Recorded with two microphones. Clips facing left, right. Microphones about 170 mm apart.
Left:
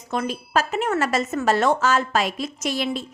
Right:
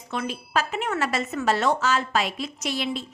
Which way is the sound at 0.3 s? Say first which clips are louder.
Left 1 dB; 40° left (ahead or behind).